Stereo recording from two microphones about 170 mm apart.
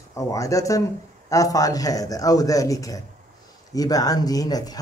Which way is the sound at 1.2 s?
20° left (ahead or behind).